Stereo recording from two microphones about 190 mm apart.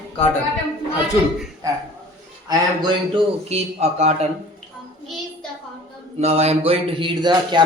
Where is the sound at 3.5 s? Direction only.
35° right (ahead or behind).